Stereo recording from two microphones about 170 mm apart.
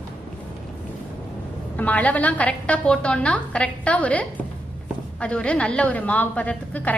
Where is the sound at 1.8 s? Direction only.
10° left (ahead or behind).